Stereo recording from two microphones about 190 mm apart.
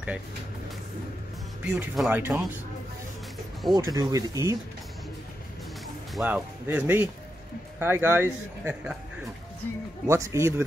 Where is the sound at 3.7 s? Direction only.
20° right (ahead or behind).